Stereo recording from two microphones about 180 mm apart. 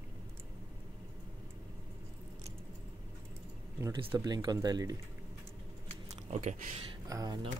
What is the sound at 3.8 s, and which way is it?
Speech, 25° right (ahead or behind).